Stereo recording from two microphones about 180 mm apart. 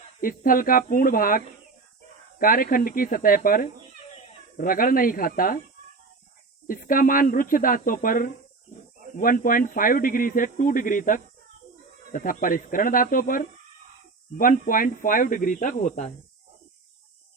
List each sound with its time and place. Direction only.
0.2 s speech: 50° left (ahead or behind)
2.4 s speech: 50° left (ahead or behind)
6.7 s speech: 50° left (ahead or behind)